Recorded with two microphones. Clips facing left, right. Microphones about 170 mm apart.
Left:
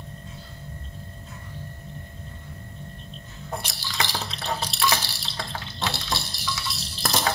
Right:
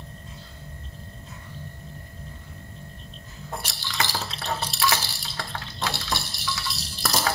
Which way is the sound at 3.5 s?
Centre (ahead or behind).